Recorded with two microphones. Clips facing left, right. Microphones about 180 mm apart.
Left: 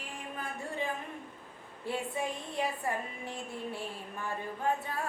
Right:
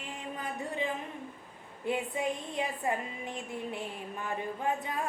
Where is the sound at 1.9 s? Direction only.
20° right (ahead or behind).